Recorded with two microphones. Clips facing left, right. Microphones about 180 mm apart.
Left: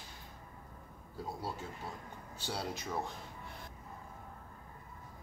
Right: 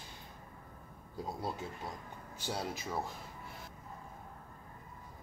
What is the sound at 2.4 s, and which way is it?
Speech, 10° right (ahead or behind).